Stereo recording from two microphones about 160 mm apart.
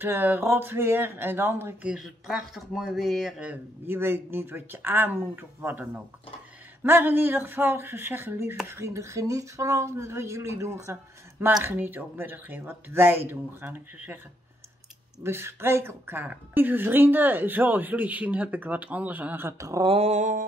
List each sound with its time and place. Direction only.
0.0 s speech: 10° right (ahead or behind)
15.2 s speech: 15° right (ahead or behind)
19.9 s mantra: 45° right (ahead or behind)